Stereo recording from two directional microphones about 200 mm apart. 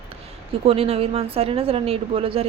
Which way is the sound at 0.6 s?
30° right (ahead or behind).